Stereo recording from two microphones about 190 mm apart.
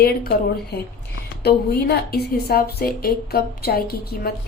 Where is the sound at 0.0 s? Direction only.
55° left (ahead or behind).